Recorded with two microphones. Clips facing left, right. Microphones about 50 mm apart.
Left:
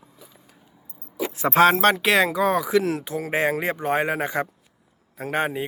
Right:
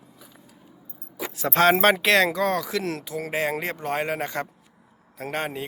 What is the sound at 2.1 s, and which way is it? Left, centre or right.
Speech, centre.